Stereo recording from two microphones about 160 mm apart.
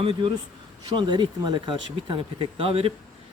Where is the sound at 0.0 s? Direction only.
35° right (ahead or behind).